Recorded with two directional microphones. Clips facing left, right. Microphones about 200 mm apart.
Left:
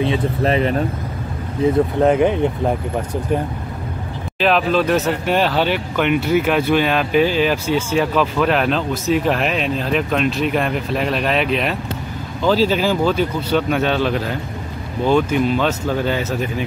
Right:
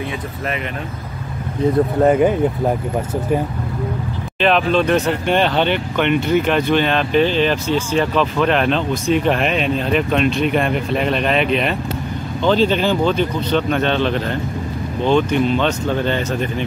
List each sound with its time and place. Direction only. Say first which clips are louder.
0.0 s speech: left 7 dB; 30° left (ahead or behind)
2.0 s speech: right 1 dB; 5° right (ahead or behind)
4.4 s speech: right 1 dB; 5° left (ahead or behind)